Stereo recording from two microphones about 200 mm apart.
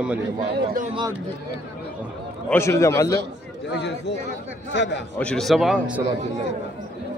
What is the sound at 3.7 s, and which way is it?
A man's voice, 60° left (ahead or behind).